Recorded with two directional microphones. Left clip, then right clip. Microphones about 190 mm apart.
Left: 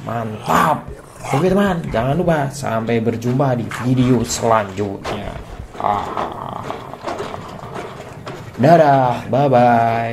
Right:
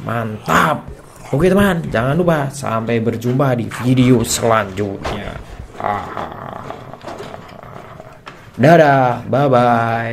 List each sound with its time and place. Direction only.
0.1 s speech: 15° right (ahead or behind)
3.6 s speech: centre (ahead or behind)
3.9 s speech: 20° right (ahead or behind)
5.0 s speech: centre (ahead or behind)
5.8 s roaring cats: centre (ahead or behind)
8.5 s speech: 15° right (ahead or behind)